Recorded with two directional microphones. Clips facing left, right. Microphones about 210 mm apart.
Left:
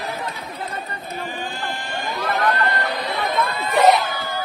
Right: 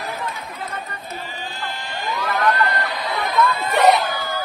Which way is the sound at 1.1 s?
50° left (ahead or behind).